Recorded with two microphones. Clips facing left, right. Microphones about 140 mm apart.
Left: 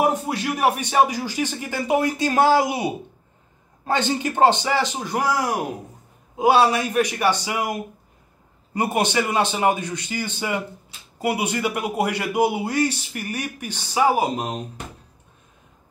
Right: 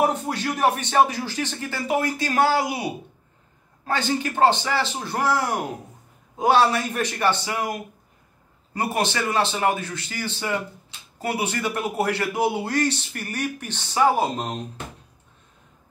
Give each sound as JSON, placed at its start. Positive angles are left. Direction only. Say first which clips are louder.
{"t": 0.0, "sound": "a man's voice", "louder": "left 1 dB", "side_deg": 10}